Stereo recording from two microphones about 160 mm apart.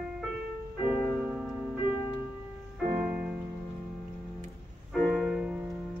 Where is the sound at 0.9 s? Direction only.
5° right (ahead or behind).